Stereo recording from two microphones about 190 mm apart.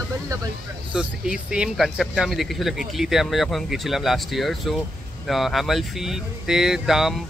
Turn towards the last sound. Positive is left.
turn(degrees=0)  # may be behind; listen again after turning